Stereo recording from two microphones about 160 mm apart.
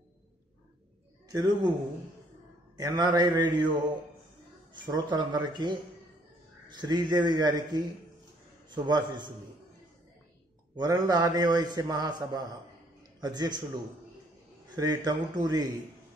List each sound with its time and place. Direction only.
1.3 s a man's voice: 25° right (ahead or behind)
2.8 s a man's voice: 30° right (ahead or behind)
4.8 s a man's voice: 30° right (ahead or behind)
10.8 s a man's voice: 25° right (ahead or behind)
14.8 s a man's voice: 25° right (ahead or behind)